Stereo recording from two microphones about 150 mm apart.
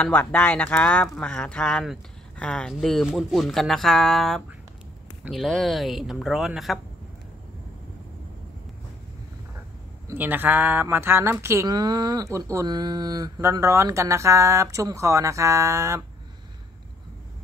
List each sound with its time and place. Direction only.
0.0 s speech: 10° left (ahead or behind)
10.0 s speech: 10° right (ahead or behind)